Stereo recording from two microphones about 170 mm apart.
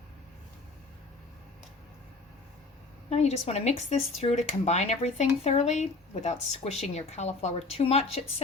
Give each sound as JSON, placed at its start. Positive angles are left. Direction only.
{"t": 3.1, "sound": "speech", "side_deg": 40}